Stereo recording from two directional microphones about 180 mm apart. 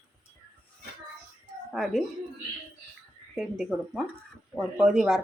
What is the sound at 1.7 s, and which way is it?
Speech, centre (ahead or behind).